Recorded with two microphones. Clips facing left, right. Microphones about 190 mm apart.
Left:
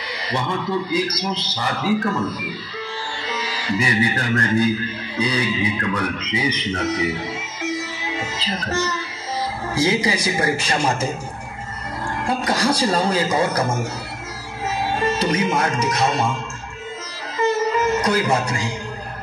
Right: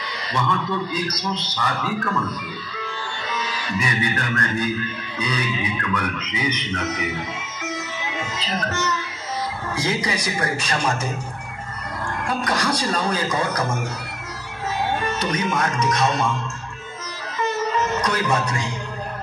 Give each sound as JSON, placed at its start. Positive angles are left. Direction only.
{"t": 0.3, "sound": "a man's voice", "side_deg": 30}
{"t": 3.3, "sound": "music", "side_deg": 30}
{"t": 5.1, "sound": "a man's voice", "side_deg": 30}
{"t": 7.6, "sound": "music", "side_deg": 30}
{"t": 9.8, "sound": "a man's voice", "side_deg": 25}
{"t": 12.3, "sound": "a man's voice", "side_deg": 25}
{"t": 15.0, "sound": "a man's voice", "side_deg": 25}
{"t": 18.0, "sound": "a man's voice", "side_deg": 25}